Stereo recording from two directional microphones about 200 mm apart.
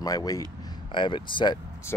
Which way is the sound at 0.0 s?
20° left (ahead or behind).